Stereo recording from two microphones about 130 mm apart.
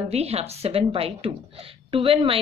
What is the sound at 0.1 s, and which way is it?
A woman's voice, 50° right (ahead or behind).